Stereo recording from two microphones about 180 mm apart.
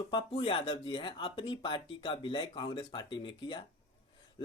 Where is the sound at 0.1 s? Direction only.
25° left (ahead or behind).